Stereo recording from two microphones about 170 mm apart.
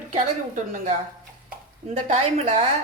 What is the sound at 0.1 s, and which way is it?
Speech, 45° right (ahead or behind).